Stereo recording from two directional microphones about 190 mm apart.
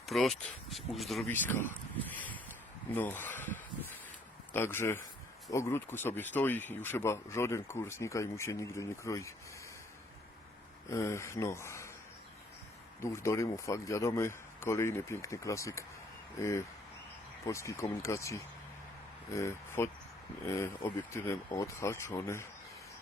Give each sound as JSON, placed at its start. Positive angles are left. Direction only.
{"t": 0.0, "sound": "speech", "side_deg": 0}
{"t": 2.1, "sound": "a sound", "side_deg": 10}
{"t": 2.9, "sound": "speech", "side_deg": 10}
{"t": 10.8, "sound": "speech", "side_deg": 15}
{"t": 13.0, "sound": "speech", "side_deg": 15}